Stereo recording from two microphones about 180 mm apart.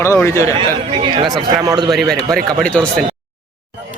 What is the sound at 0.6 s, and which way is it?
Speech, 25° right (ahead or behind).